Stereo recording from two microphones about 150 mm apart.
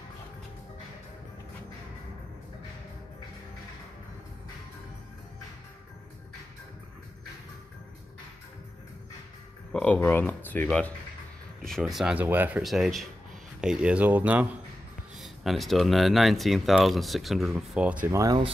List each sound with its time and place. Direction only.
9.7 s speech: 10° left (ahead or behind)
18.0 s speech: 20° right (ahead or behind)